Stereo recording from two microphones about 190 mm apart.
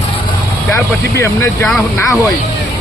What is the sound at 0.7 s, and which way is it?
Speech, 15° left (ahead or behind).